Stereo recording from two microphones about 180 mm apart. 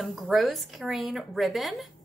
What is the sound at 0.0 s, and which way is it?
A woman's voice, centre (ahead or behind).